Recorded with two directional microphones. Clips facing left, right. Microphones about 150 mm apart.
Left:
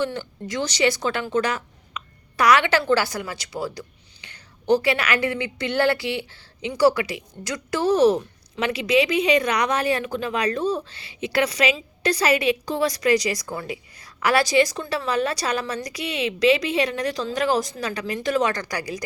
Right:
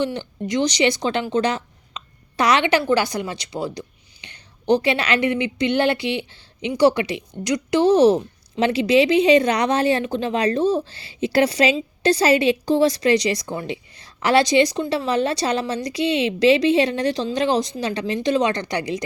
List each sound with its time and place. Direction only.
0.0 s a woman's voice: 20° right (ahead or behind)